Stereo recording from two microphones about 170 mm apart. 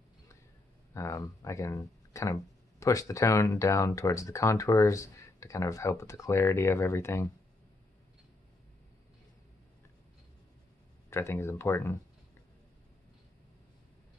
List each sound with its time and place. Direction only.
0.9 s speech: 20° left (ahead or behind)
11.1 s speech: 15° left (ahead or behind)